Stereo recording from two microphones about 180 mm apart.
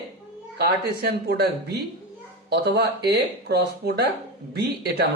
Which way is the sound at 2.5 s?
65° right (ahead or behind).